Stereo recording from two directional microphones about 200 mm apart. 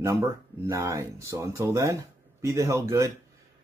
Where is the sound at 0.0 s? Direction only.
15° right (ahead or behind).